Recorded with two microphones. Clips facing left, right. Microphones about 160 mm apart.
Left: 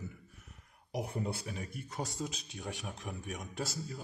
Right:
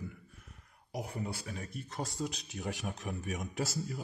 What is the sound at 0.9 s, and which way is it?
Speech, 25° left (ahead or behind).